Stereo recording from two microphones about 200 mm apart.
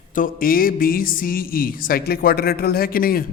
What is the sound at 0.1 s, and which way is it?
Speech, 45° left (ahead or behind).